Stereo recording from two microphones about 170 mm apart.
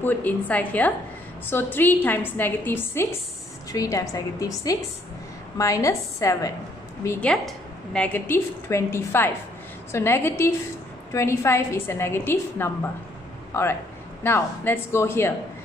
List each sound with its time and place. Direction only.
0.0 s a woman's voice: 10° left (ahead or behind)
7.1 s a woman's voice: 5° left (ahead or behind)